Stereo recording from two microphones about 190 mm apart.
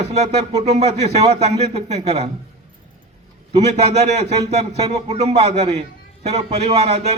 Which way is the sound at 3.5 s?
35° right (ahead or behind).